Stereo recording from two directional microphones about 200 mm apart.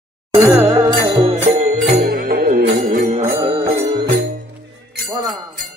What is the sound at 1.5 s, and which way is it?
Music, 35° right (ahead or behind).